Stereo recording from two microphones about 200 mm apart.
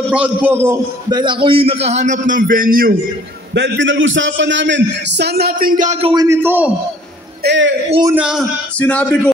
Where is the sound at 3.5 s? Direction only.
60° right (ahead or behind); by 6.1 s 35° right (ahead or behind).